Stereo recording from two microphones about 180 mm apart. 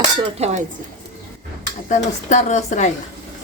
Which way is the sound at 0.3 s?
35° right (ahead or behind).